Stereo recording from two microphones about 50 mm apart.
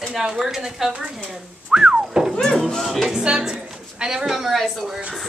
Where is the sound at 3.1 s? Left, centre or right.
Centre.